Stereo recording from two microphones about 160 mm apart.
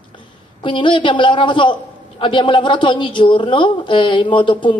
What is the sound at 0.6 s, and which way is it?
A man's voice, 30° left (ahead or behind).